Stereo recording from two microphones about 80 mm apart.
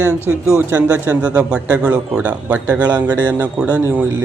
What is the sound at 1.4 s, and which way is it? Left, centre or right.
A man's voice, centre.